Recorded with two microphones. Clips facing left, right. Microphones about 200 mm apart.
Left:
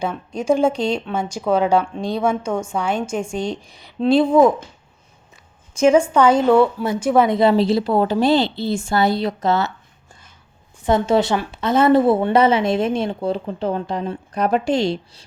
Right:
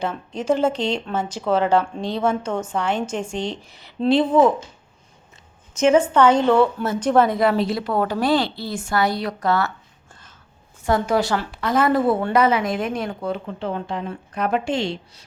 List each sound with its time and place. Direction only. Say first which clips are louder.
0.3 s a woman's voice: left 3 dB; 10° left (ahead or behind)
5.7 s a woman's voice: left 2 dB; 10° left (ahead or behind)
7.3 s a woman's voice: left 4 dB; 30° left (ahead or behind)
10.8 s a woman's voice: left 3 dB; 25° left (ahead or behind)